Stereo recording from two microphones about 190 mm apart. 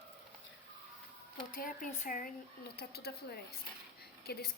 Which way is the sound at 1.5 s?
45° left (ahead or behind).